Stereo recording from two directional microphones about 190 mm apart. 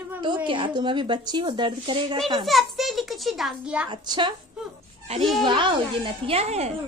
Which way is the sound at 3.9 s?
25° right (ahead or behind).